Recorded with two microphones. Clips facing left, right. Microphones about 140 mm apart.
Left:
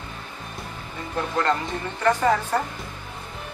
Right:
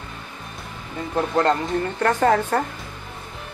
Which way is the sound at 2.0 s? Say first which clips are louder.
Right 1 dB; 60° right (ahead or behind).